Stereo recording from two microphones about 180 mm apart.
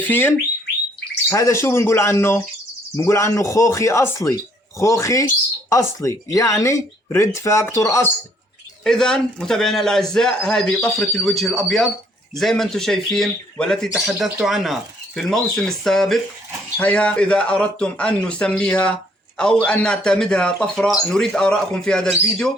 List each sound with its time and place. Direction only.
0.0 s speech: 10° left (ahead or behind)
8.8 s speech: 5° left (ahead or behind)